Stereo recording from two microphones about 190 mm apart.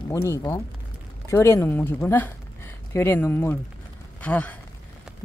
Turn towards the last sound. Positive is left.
turn(degrees=5)  # may be behind; listen again after turning